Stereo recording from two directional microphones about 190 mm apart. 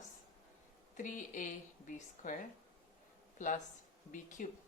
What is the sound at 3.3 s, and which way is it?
Speech, 40° left (ahead or behind).